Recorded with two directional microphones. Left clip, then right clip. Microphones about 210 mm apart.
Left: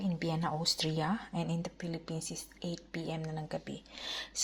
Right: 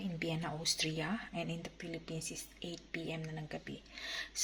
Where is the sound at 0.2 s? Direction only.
15° left (ahead or behind).